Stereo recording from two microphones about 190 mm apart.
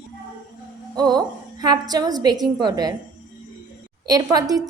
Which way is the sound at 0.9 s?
20° right (ahead or behind).